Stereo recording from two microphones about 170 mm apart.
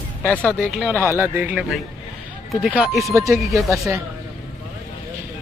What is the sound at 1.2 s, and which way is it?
Speech, 10° right (ahead or behind).